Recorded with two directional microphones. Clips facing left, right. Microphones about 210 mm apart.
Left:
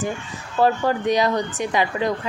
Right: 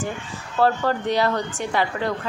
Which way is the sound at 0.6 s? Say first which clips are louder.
Left 1 dB; 15° left (ahead or behind).